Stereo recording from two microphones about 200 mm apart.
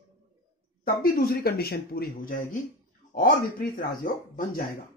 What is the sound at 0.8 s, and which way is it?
Speech, 50° left (ahead or behind).